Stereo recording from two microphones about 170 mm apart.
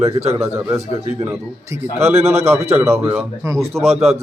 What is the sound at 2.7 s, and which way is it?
Speech, 15° right (ahead or behind).